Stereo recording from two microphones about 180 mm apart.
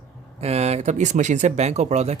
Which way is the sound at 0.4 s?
35° right (ahead or behind).